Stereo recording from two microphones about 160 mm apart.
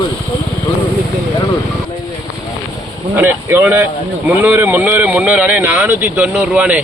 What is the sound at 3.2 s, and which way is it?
Speech, 10° right (ahead or behind).